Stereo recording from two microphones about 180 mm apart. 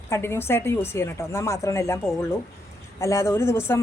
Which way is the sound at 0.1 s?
15° left (ahead or behind).